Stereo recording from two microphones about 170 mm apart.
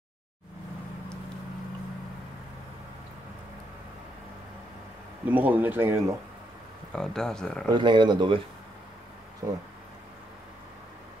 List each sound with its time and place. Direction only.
5.2 s speech: 10° right (ahead or behind)
6.9 s speech: 5° left (ahead or behind)
7.6 s speech: 25° right (ahead or behind)
9.4 s speech: 20° right (ahead or behind)